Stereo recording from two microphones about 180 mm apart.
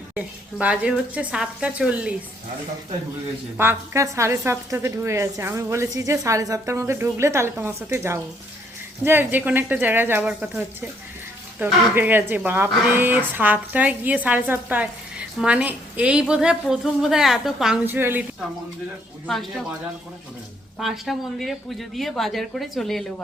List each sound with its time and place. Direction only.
0.1 s a woman's voice: 5° right (ahead or behind)
3.6 s a woman's voice: 15° right (ahead or behind)
19.3 s a woman's voice: centre (ahead or behind)
20.7 s a woman's voice: centre (ahead or behind)